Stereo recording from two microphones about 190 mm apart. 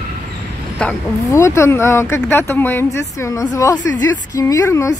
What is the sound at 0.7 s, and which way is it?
Speech, 10° left (ahead or behind).